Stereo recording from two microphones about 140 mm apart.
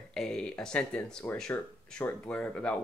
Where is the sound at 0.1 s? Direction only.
5° left (ahead or behind).